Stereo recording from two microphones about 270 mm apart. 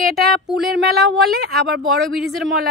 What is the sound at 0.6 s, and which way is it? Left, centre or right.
Speech, centre.